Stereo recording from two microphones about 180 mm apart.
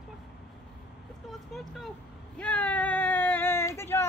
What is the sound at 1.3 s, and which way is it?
Vehicle, centre (ahead or behind).